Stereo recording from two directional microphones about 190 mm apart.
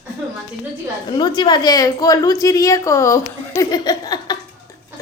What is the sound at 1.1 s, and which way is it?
A woman's voice, 20° left (ahead or behind).